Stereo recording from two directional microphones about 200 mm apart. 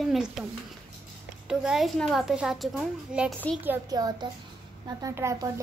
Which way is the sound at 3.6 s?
15° right (ahead or behind).